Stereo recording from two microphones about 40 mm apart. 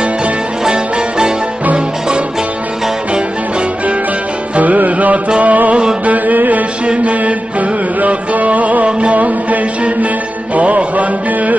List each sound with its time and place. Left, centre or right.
0.0 s music: right
4.6 s music: right